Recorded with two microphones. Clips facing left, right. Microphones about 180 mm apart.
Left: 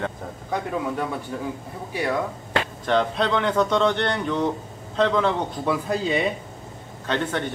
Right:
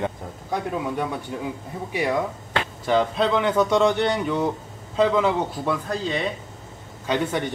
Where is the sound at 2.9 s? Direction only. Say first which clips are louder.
Right 2 dB; 5° right (ahead or behind).